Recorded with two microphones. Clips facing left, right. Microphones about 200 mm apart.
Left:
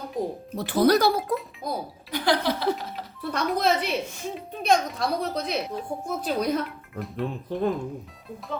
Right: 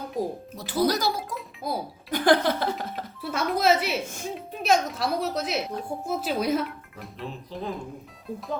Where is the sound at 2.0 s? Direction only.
50° right (ahead or behind).